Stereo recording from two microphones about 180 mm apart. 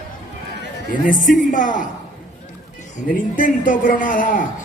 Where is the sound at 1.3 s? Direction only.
45° left (ahead or behind).